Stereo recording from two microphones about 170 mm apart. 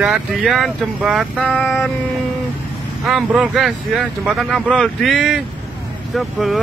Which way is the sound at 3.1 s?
5° right (ahead or behind).